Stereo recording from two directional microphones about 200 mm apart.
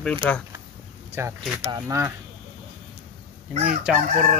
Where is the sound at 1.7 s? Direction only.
15° right (ahead or behind).